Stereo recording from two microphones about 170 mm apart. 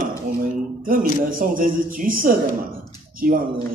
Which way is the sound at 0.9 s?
55° right (ahead or behind).